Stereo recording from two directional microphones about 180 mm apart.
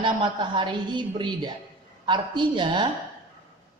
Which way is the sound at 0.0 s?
25° right (ahead or behind).